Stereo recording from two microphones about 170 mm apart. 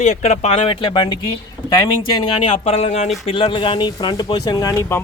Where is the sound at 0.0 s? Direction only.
45° left (ahead or behind).